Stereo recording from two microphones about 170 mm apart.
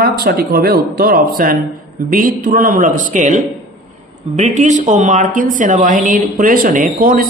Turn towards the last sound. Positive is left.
turn(degrees=-55)  # may be behind; listen again after turning